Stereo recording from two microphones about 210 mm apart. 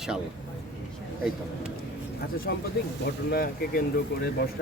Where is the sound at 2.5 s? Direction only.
45° left (ahead or behind).